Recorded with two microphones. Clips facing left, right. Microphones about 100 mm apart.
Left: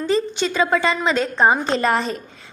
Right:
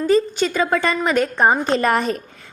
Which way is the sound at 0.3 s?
45° right (ahead or behind).